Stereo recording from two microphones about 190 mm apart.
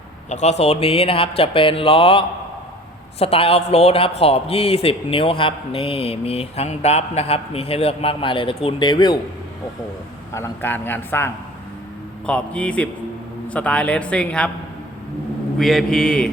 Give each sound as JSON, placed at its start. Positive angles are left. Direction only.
{"t": 0.3, "sound": "a man's voice", "side_deg": 40}
{"t": 0.6, "sound": "mantra", "side_deg": 30}
{"t": 3.2, "sound": "a man's voice", "side_deg": 30}
{"t": 10.3, "sound": "a man's voice", "side_deg": 15}
{"t": 15.5, "sound": "a man's voice", "side_deg": 0}